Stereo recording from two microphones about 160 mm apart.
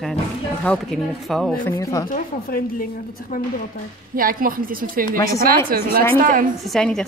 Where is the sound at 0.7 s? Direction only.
5° left (ahead or behind).